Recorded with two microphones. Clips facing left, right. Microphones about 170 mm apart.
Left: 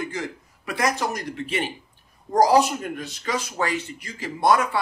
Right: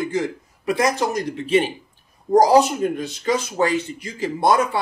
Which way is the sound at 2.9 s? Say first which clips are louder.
Right 6 dB; 25° right (ahead or behind).